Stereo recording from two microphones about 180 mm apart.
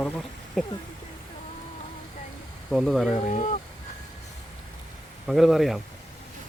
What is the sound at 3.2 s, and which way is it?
Speech, 40° left (ahead or behind).